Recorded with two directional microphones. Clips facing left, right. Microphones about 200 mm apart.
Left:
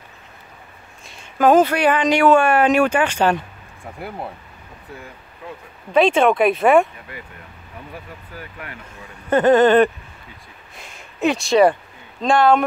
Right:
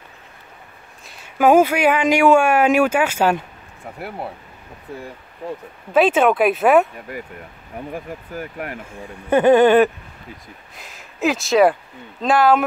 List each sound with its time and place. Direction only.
1.0 s speech: 10° right (ahead or behind)
5.9 s speech: 5° right (ahead or behind)
7.9 s speech: 45° right (ahead or behind)
9.3 s speech: 10° right (ahead or behind)